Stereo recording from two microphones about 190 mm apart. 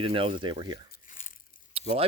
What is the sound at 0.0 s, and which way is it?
Speech, 25° right (ahead or behind).